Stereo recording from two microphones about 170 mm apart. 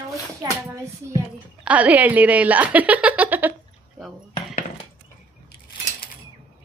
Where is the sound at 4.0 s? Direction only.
Centre (ahead or behind).